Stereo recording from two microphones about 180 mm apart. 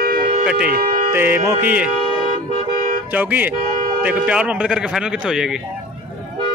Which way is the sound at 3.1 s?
10° right (ahead or behind).